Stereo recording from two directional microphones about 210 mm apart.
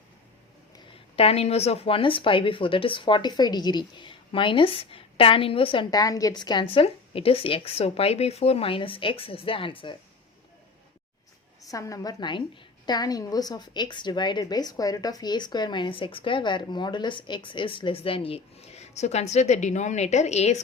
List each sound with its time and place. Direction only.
1.1 s speech: 30° left (ahead or behind)
11.7 s a woman's voice: 15° left (ahead or behind); by 20.6 s 30° left (ahead or behind)